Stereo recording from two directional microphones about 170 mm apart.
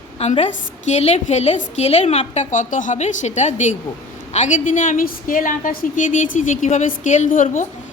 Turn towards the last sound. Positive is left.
turn(degrees=50)  # may be behind; listen again after turning